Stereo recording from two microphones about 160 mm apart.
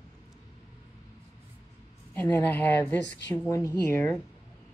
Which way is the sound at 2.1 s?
10° left (ahead or behind).